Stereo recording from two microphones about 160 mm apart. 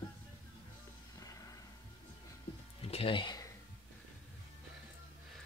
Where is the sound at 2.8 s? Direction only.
35° left (ahead or behind).